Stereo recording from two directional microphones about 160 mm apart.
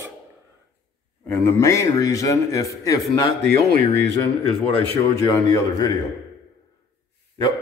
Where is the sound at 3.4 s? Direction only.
70° right (ahead or behind).